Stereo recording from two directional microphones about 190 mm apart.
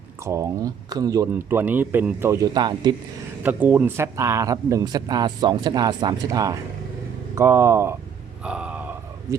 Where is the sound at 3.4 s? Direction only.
10° right (ahead or behind).